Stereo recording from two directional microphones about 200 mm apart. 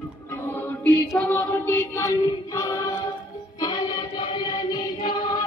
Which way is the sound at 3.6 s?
20° left (ahead or behind).